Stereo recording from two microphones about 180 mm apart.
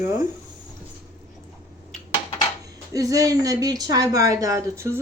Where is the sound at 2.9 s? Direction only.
20° right (ahead or behind).